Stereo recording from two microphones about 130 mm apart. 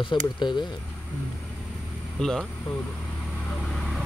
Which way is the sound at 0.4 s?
35° left (ahead or behind).